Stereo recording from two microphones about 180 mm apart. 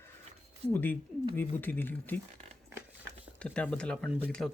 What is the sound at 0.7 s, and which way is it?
Speech, 10° left (ahead or behind).